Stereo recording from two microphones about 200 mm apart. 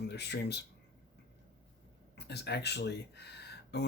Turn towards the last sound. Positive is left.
turn(degrees=55)  # may be behind; listen again after turning